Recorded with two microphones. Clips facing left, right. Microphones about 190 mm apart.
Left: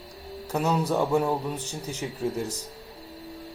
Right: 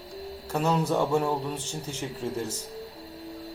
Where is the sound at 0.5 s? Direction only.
10° left (ahead or behind).